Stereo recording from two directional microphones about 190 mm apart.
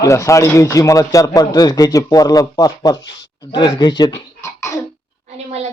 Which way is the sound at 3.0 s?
70° left (ahead or behind).